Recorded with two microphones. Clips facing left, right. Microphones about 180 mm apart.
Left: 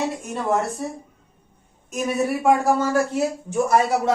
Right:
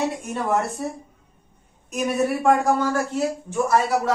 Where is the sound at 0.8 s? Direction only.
Centre (ahead or behind).